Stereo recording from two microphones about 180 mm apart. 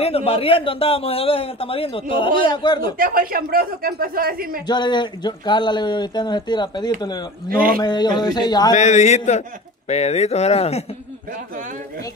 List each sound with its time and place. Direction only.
0.0 s a man's voice: 35° left (ahead or behind)
2.8 s speech: 55° right (ahead or behind)
4.6 s speech: 25° left (ahead or behind)
7.4 s speech: 55° right (ahead or behind)
7.8 s speech: 25° left (ahead or behind)
8.7 s a man's voice: 40° left (ahead or behind)